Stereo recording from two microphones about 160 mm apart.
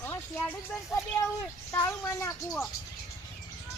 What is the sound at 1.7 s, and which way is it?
Speech, 15° left (ahead or behind).